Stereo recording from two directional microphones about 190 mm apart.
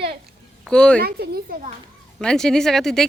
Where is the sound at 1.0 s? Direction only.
55° right (ahead or behind).